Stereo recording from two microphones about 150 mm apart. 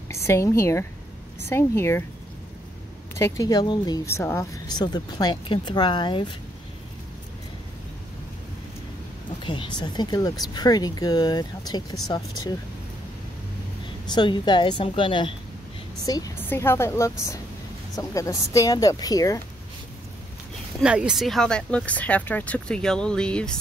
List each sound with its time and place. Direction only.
0.1 s speech: 20° left (ahead or behind)
3.2 s speech: 20° left (ahead or behind)
9.4 s speech: 30° left (ahead or behind)
14.1 s a woman's voice: 30° left (ahead or behind)
16.3 s a woman's voice: 15° left (ahead or behind)
20.8 s speech: 5° right (ahead or behind)